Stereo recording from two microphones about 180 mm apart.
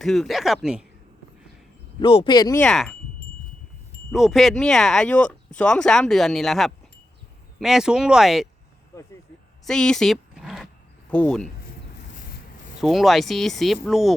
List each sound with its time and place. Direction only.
0.0 s speech: centre (ahead or behind)
2.0 s speech: 25° left (ahead or behind)
2.6 s speech: centre (ahead or behind)
4.1 s speech: centre (ahead or behind)
9.6 s a sound: 5° left (ahead or behind)
11.1 s speech: 5° left (ahead or behind)
12.1 s rub: 50° left (ahead or behind)
12.8 s speech: centre (ahead or behind)